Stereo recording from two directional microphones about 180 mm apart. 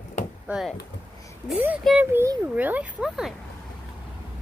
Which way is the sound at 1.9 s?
5° right (ahead or behind).